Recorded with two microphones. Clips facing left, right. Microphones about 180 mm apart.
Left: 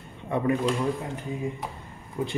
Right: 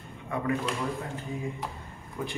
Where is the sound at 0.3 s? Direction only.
25° left (ahead or behind).